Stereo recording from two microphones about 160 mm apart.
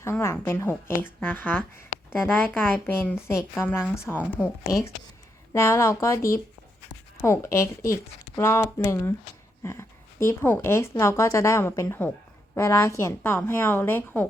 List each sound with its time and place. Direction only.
0.0 s a woman's voice: 15° left (ahead or behind)
5.5 s a woman's voice: 15° left (ahead or behind)